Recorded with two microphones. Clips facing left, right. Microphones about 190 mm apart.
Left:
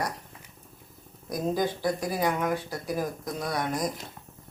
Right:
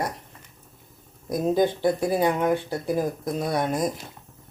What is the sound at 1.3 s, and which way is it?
Speech, 25° right (ahead or behind).